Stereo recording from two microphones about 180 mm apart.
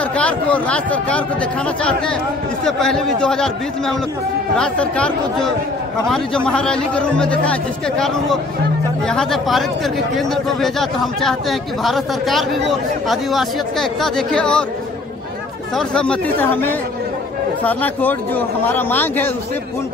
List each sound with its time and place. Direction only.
0.1 s a man's voice: 5° left (ahead or behind)
2.6 s speech: 5° left (ahead or behind)
4.6 s speech: 5° left (ahead or behind)
9.0 s speech: 5° left (ahead or behind)
15.7 s a man's voice: 5° left (ahead or behind)